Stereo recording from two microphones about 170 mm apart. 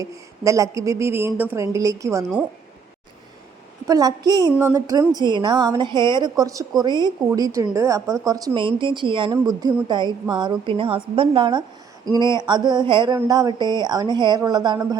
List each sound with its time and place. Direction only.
0.0 s speech: 20° right (ahead or behind)
3.8 s speech: 20° right (ahead or behind)